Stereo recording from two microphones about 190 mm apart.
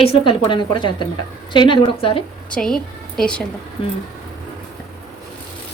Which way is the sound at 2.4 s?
5° left (ahead or behind).